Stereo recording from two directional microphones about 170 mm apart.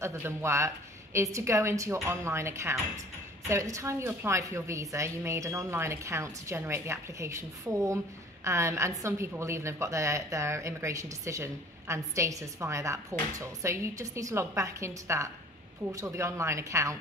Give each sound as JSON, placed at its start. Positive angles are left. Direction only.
{"t": 0.0, "sound": "a woman's voice", "side_deg": -15}